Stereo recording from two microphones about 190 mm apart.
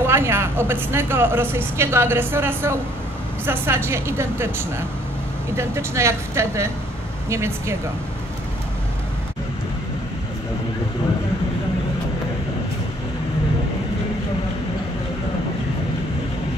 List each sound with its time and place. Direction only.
0.0 s a woman's voice: 15° right (ahead or behind)